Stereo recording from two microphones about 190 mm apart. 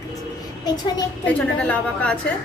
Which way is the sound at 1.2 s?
5° left (ahead or behind).